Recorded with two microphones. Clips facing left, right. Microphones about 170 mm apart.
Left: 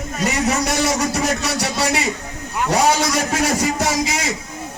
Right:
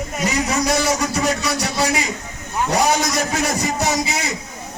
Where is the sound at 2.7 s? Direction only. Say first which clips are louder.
Left 2 dB; 85° left.